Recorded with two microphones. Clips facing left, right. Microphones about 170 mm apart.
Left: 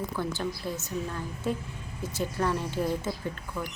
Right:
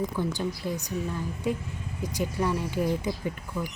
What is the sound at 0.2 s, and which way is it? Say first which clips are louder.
A woman's voice: right 2 dB; 15° right (ahead or behind).